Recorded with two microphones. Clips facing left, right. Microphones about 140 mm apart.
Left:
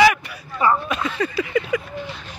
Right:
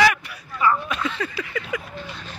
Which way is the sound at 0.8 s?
5° left (ahead or behind).